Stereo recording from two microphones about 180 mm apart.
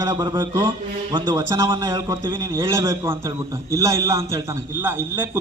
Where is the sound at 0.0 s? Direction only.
20° right (ahead or behind).